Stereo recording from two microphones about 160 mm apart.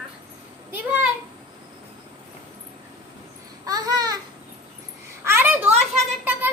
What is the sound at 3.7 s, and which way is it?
Babbling, 25° right (ahead or behind).